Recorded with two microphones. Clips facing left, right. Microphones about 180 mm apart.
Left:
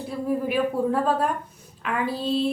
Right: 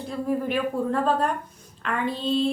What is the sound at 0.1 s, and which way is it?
A woman's voice, 5° left (ahead or behind).